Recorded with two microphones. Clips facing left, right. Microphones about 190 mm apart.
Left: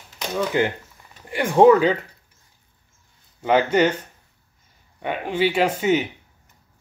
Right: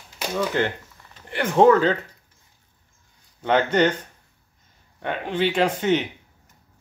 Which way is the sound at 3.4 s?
5° left (ahead or behind).